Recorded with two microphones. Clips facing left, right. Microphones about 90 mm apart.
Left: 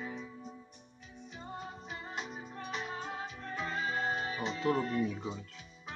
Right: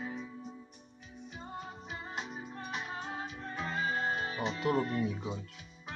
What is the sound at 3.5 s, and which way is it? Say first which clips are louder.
Music: right 1 dB; 10° right (ahead or behind).